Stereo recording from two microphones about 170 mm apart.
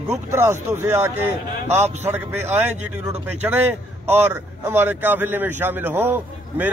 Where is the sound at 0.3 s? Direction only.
15° right (ahead or behind).